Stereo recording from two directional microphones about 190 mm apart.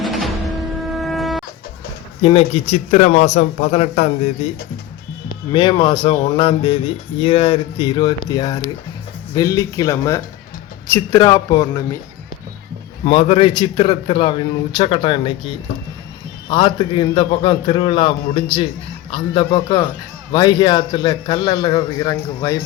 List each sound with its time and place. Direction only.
0.0 s music: centre (ahead or behind)
0.9 s a sound: centre (ahead or behind)
2.2 s speech: 30° left (ahead or behind)
5.3 s speech: 25° left (ahead or behind)
13.1 s speech: 25° left (ahead or behind)